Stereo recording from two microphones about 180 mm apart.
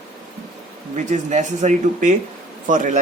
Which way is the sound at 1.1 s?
40° right (ahead or behind).